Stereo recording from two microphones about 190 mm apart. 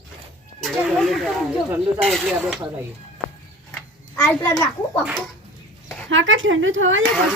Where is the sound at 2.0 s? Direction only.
Centre (ahead or behind).